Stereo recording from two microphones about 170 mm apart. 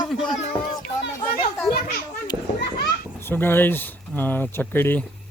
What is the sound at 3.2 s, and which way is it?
Speech, 10° left (ahead or behind).